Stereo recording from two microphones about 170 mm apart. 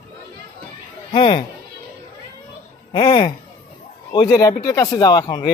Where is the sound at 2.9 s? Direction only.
30° left (ahead or behind).